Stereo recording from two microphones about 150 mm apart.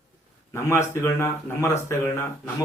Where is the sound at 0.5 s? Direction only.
20° left (ahead or behind).